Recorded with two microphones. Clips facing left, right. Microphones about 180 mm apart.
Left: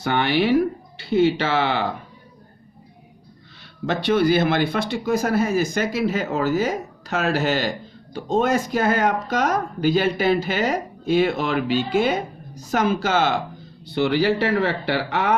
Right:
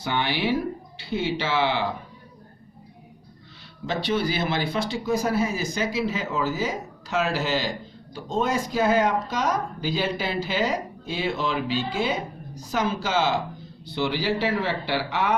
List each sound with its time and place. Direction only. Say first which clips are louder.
0.0 s speech: left 6 dB; 60° left (ahead or behind)
3.8 s speech: left 6 dB; 55° left (ahead or behind)